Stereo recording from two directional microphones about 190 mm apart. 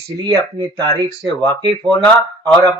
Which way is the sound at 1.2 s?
5° left (ahead or behind).